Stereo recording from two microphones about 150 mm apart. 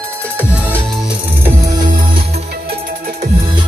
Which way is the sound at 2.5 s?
80° right.